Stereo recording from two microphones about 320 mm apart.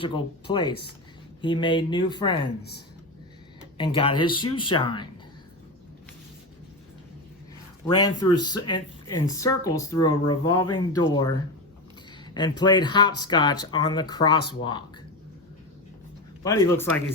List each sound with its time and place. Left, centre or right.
0.0 s speech: centre
2.6 s speech: left
3.8 s speech: centre
8.0 s speech: centre
16.4 s speech: centre